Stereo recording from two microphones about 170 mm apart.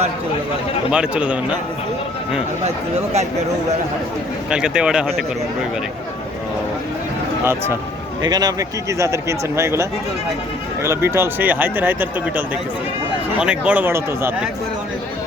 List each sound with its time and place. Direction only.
0.9 s speech: 5° right (ahead or behind)
2.6 s speech: 40° right (ahead or behind)
4.4 s speech: 5° right (ahead or behind)
8.2 s speech: 20° right (ahead or behind)
10.8 s speech: 15° right (ahead or behind)
13.4 s speech: 5° right (ahead or behind)